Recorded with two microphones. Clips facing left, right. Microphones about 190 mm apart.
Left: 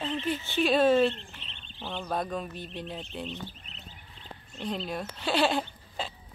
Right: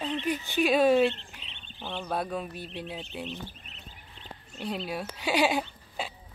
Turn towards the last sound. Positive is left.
turn(degrees=-10)  # may be behind; listen again after turning